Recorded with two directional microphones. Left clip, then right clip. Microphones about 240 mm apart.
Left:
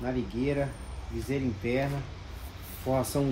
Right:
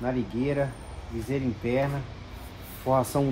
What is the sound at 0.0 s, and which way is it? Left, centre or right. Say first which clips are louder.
Speech: right 3 dB; centre.